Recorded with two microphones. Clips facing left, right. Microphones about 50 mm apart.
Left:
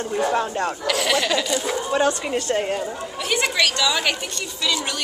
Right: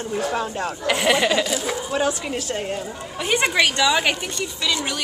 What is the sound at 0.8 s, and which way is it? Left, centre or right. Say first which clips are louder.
Speech: right 4 dB; right.